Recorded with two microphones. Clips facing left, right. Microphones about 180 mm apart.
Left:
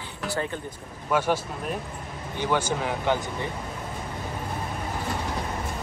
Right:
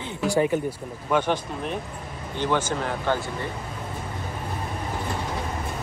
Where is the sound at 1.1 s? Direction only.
5° left (ahead or behind).